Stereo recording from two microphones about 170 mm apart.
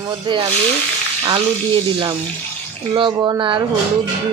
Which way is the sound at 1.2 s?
25° right (ahead or behind).